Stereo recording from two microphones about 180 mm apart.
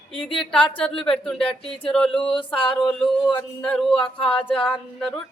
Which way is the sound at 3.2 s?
25° left (ahead or behind).